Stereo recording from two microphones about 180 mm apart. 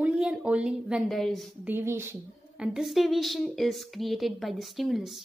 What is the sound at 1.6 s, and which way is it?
A woman's voice, 10° right (ahead or behind).